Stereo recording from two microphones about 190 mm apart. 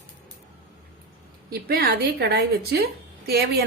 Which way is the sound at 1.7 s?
50° right (ahead or behind).